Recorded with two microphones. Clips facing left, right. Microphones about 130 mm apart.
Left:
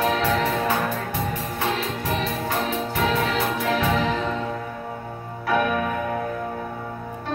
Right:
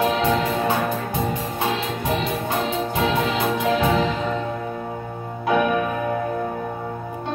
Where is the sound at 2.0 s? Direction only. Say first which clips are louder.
Right 2 dB; 20° right (ahead or behind).